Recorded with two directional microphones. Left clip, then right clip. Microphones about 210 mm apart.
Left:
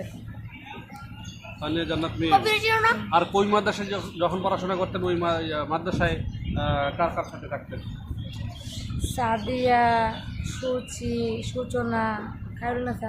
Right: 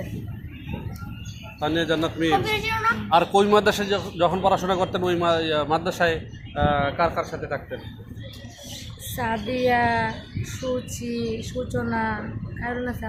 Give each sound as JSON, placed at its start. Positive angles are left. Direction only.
{"t": 1.6, "sound": "a man's voice", "side_deg": -45}
{"t": 2.4, "sound": "speech", "side_deg": 50}
{"t": 3.1, "sound": "a man's voice", "side_deg": -45}
{"t": 9.1, "sound": "speech", "side_deg": 5}